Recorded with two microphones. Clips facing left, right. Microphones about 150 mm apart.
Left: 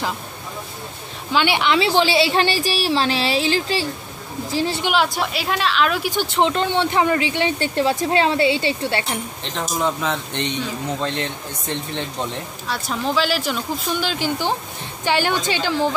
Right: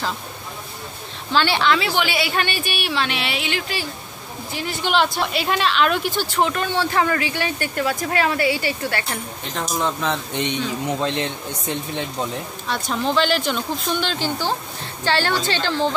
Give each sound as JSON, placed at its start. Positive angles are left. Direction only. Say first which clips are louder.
{"t": 1.3, "sound": "a woman's voice", "louder": "even", "side_deg": 15}
{"t": 4.8, "sound": "speech", "louder": "even", "side_deg": 10}
{"t": 6.0, "sound": "speech", "louder": "left 2 dB", "side_deg": 20}
{"t": 9.4, "sound": "speech", "louder": "even", "side_deg": 0}
{"t": 10.3, "sound": "speech", "louder": "right 1 dB", "side_deg": -15}
{"t": 12.6, "sound": "a woman's voice", "louder": "right 1 dB", "side_deg": 5}